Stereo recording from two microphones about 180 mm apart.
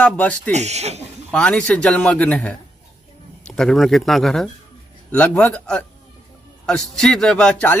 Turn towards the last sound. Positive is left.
turn(degrees=5)  # may be behind; listen again after turning